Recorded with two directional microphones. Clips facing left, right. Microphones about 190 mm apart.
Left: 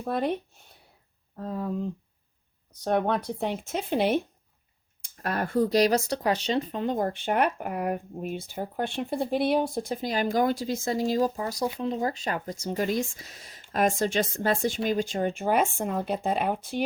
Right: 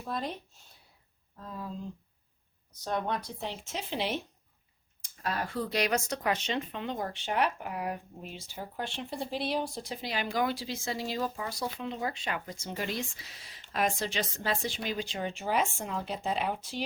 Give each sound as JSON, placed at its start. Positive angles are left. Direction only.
{"t": 0.0, "sound": "speech", "side_deg": 60}